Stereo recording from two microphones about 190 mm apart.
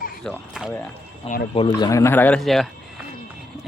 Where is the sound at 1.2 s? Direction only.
30° left (ahead or behind).